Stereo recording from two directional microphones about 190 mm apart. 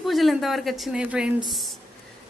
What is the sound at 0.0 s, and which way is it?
Speech, centre (ahead or behind).